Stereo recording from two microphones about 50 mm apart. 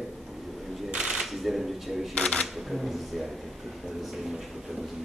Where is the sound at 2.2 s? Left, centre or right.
Centre.